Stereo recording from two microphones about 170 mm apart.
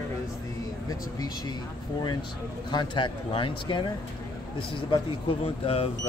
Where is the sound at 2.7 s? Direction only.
25° left (ahead or behind).